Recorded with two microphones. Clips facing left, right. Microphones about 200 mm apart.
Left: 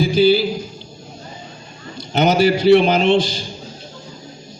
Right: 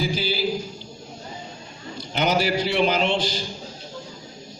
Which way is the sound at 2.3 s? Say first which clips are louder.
Left 12 dB; 70° left (ahead or behind).